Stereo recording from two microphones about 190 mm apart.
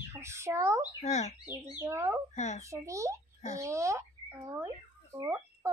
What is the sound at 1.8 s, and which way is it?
Speech, 15° right (ahead or behind).